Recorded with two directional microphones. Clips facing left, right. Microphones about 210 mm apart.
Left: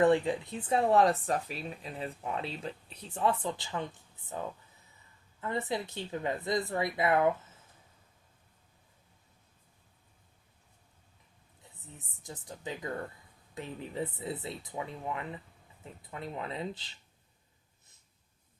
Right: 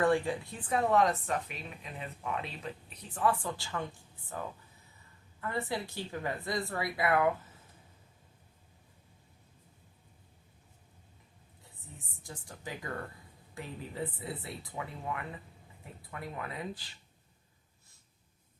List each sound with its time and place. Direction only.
0.0 s speech: 20° left (ahead or behind)
11.6 s speech: 20° left (ahead or behind)